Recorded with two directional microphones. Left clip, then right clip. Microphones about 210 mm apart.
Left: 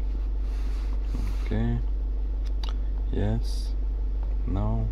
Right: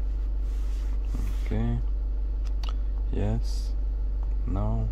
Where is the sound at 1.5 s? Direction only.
20° right (ahead or behind).